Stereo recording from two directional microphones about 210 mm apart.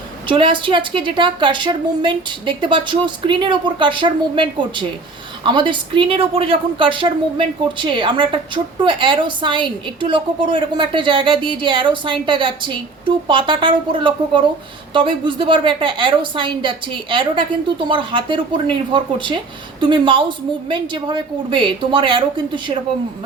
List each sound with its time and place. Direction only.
0.3 s a woman's voice: 25° right (ahead or behind)